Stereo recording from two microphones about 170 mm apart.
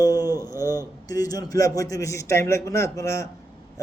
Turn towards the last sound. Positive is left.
turn(degrees=20)  # may be behind; listen again after turning